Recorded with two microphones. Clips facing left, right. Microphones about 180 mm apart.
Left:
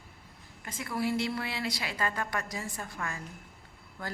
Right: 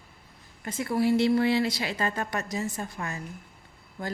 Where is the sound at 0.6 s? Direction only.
30° right (ahead or behind).